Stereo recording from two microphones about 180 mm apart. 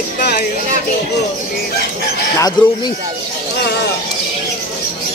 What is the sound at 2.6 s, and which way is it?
Speech, 25° left (ahead or behind).